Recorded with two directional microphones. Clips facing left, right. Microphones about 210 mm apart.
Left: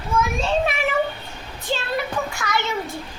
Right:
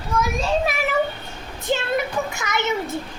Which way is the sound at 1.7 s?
20° right (ahead or behind).